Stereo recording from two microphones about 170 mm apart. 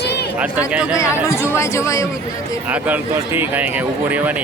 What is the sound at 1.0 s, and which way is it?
Speech, 20° left (ahead or behind).